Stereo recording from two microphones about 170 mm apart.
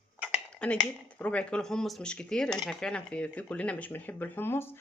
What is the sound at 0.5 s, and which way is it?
Speech, 5° left (ahead or behind).